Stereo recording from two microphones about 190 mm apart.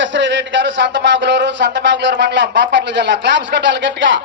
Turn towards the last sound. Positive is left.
turn(degrees=-70)  # may be behind; listen again after turning